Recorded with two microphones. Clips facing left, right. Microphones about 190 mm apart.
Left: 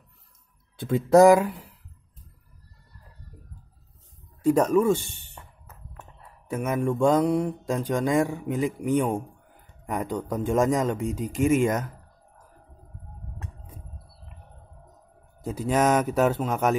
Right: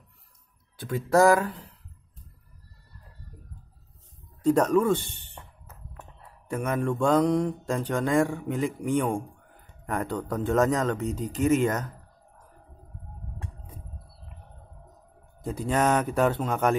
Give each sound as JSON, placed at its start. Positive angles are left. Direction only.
{"t": 0.7, "sound": "mantra", "side_deg": 25}
{"t": 4.4, "sound": "mantra", "side_deg": 10}
{"t": 6.5, "sound": "mantra", "side_deg": 10}
{"t": 15.4, "sound": "speech", "side_deg": 5}